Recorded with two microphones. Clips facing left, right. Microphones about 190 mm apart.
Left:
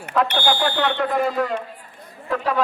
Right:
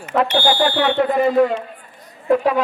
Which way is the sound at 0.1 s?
25° right (ahead or behind).